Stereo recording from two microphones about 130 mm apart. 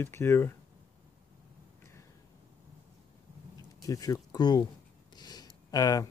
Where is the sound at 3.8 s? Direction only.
25° left (ahead or behind).